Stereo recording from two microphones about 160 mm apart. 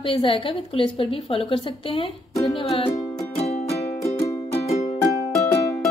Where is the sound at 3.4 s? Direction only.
45° left (ahead or behind).